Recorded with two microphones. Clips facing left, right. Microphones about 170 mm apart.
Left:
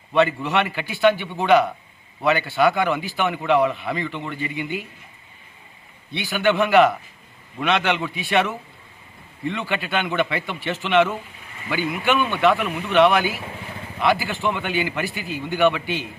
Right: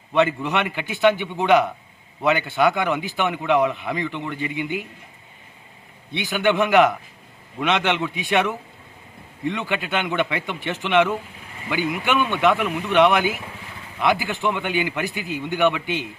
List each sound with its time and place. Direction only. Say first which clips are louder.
0.2 s a man's voice: left 1 dB; 20° right (ahead or behind)
6.1 s a man's voice: even; 20° right (ahead or behind)